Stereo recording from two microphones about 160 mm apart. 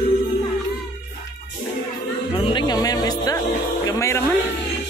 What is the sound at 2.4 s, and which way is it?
Music, 30° left (ahead or behind).